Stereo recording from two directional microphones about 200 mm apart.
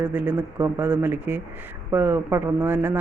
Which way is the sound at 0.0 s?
10° right (ahead or behind).